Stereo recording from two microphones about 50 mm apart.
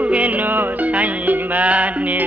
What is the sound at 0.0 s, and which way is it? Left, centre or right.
Music, right.